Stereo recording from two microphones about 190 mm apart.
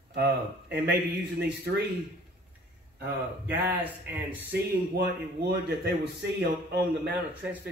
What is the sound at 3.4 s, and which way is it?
Speech, 10° right (ahead or behind).